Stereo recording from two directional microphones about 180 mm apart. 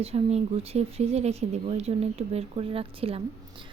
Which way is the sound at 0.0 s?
35° right (ahead or behind).